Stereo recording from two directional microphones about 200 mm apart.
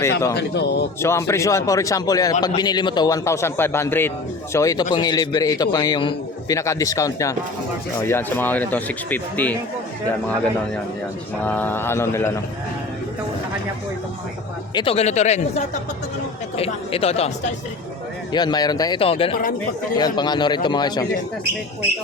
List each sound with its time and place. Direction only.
0.0 s a man's voice: 15° left (ahead or behind)
0.3 s speech: 55° left (ahead or behind)
1.0 s a man's voice: 15° left (ahead or behind)
11.4 s a man's voice: 10° left (ahead or behind)
14.8 s a man's voice: 30° left (ahead or behind)
18.3 s a man's voice: 20° left (ahead or behind)